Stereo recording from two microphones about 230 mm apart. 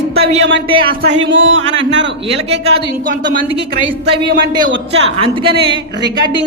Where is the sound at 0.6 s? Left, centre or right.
Right.